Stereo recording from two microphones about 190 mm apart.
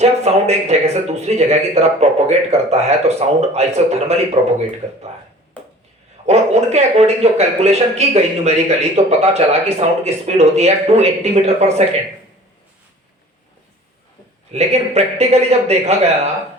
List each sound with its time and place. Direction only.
0.0 s speech: 35° right (ahead or behind)
6.2 s speech: 35° right (ahead or behind)
14.5 s speech: 35° right (ahead or behind)